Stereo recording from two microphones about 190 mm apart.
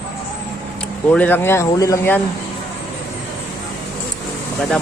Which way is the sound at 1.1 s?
10° left (ahead or behind).